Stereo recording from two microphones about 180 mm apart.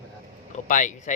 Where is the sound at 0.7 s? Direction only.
45° left (ahead or behind).